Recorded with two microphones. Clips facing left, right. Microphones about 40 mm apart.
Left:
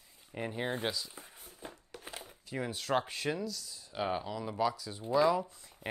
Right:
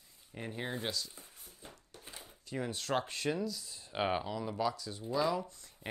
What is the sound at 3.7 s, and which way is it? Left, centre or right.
Speech, right.